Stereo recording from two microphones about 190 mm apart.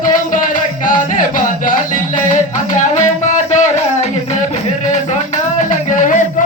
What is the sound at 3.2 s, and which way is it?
Music, 40° left (ahead or behind).